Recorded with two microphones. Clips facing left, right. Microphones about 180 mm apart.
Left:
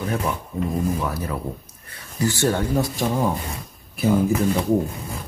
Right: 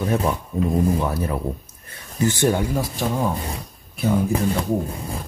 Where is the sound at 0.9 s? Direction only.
25° right (ahead or behind).